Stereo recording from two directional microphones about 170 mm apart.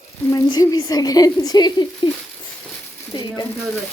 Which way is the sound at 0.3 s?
20° left (ahead or behind).